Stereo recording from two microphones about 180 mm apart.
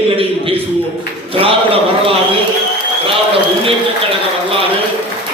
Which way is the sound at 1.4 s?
30° right (ahead or behind).